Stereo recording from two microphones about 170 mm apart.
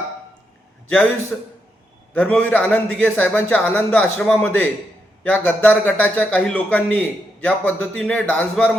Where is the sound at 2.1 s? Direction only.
10° left (ahead or behind).